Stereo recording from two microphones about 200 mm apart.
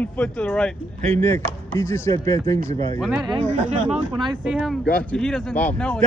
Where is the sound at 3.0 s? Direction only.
Centre (ahead or behind).